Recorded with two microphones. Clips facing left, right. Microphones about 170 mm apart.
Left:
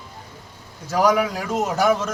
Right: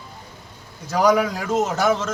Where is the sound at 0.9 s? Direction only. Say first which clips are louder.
Right 1 dB; 5° left (ahead or behind).